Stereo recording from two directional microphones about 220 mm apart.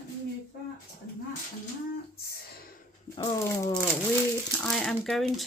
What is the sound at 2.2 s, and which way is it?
Speech, 45° left (ahead or behind).